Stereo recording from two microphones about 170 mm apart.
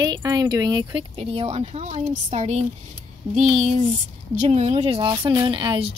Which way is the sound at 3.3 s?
45° right (ahead or behind).